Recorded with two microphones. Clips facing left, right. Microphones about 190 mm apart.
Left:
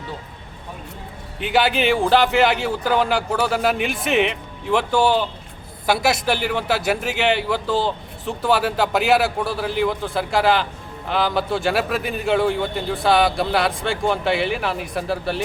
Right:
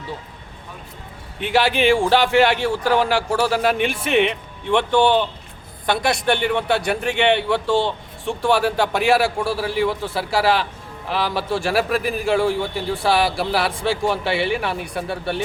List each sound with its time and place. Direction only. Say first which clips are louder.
1.4 s a man's voice: right 1 dB; centre (ahead or behind)